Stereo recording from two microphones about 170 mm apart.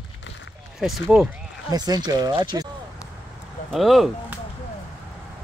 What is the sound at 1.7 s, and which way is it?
Speech, 25° right (ahead or behind).